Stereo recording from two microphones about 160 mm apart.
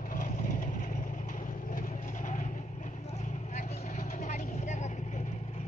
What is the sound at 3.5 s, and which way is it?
Vehicle, 50° left (ahead or behind).